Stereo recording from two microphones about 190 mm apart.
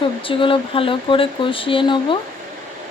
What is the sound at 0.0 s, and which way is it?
Speech, 25° left (ahead or behind).